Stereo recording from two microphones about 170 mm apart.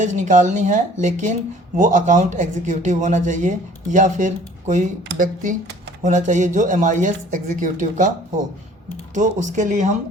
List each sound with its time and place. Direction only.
0.0 s speech: 45° right (ahead or behind)
9.1 s speech: 45° right (ahead or behind)